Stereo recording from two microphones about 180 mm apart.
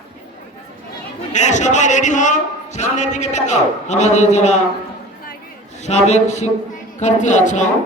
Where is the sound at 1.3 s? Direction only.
40° left (ahead or behind).